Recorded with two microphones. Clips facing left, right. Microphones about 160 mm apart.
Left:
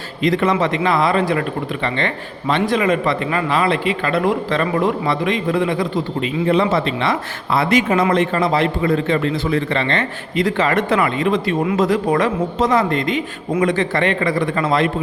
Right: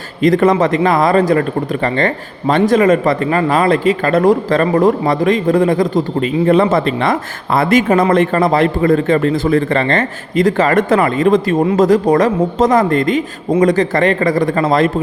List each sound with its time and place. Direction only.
0.2 s a man's voice: 45° right (ahead or behind)